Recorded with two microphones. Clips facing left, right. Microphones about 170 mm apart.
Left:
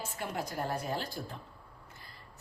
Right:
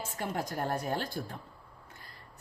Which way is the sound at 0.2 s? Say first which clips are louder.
Right 2 dB; 50° right (ahead or behind).